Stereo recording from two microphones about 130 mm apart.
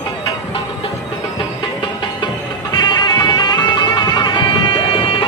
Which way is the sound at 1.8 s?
35° left (ahead or behind).